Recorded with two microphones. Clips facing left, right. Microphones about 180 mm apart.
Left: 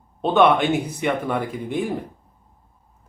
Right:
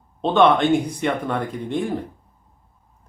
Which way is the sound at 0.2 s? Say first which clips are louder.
Right 1 dB; 10° left (ahead or behind).